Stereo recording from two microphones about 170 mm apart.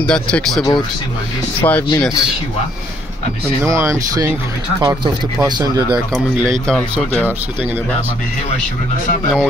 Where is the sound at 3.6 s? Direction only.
15° right (ahead or behind).